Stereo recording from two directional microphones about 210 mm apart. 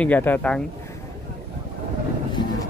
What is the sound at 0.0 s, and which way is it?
Speech, 10° left (ahead or behind).